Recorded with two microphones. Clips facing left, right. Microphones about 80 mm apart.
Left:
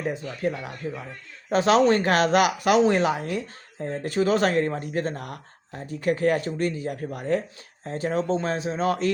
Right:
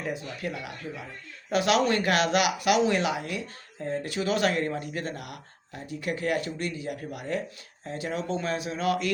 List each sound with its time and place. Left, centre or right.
0.0 s speech: left